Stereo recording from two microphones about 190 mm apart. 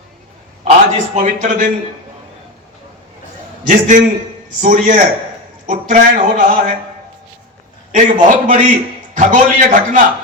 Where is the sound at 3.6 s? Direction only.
45° right (ahead or behind).